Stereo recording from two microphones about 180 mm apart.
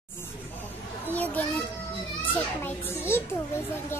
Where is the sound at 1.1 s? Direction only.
10° left (ahead or behind).